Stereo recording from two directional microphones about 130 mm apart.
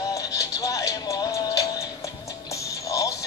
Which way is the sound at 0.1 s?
25° left (ahead or behind).